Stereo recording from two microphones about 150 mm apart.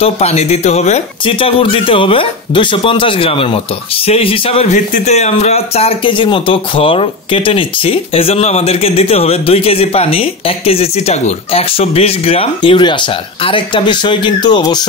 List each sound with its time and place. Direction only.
0.0 s speech: 45° left (ahead or behind)
4.7 s speech: 55° left (ahead or behind); by 14.8 s 30° left (ahead or behind)